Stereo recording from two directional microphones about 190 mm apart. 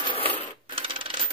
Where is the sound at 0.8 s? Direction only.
25° right (ahead or behind).